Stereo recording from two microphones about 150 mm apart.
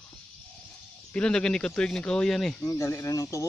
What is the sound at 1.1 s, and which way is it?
Speech, 5° left (ahead or behind).